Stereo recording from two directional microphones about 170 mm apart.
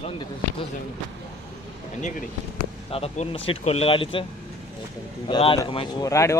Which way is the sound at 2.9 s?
35° left (ahead or behind).